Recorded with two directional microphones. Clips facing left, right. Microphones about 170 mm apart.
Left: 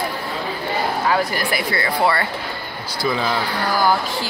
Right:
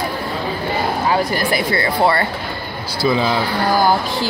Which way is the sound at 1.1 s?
25° right (ahead or behind).